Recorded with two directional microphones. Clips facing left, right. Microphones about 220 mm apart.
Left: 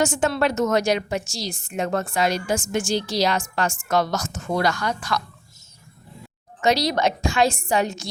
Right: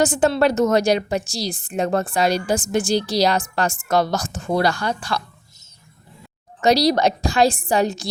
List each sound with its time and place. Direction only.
0.0 s a woman's voice: 35° right (ahead or behind)
6.6 s a woman's voice: 35° right (ahead or behind)